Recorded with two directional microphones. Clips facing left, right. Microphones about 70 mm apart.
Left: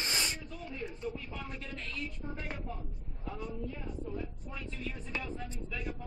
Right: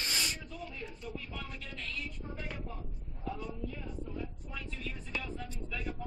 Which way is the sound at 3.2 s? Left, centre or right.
Left.